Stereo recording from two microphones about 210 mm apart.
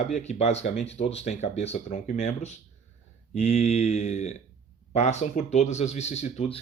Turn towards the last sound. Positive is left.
turn(degrees=30)  # may be behind; listen again after turning